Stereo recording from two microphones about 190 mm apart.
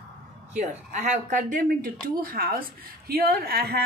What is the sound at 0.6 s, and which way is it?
Speech, 40° right (ahead or behind).